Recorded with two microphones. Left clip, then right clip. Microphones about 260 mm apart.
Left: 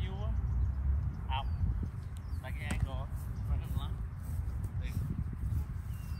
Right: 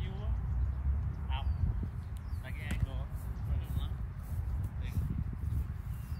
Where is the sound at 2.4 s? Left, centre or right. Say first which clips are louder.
Left 2 dB; centre.